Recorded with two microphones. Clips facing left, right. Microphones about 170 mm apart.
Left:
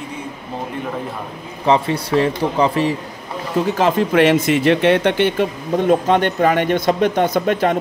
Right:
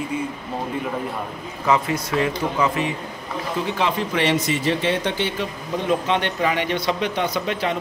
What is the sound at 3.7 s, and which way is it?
Speech, 45° left (ahead or behind).